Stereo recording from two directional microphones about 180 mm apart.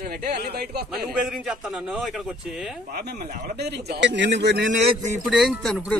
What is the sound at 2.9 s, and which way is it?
Speech, 65° right (ahead or behind).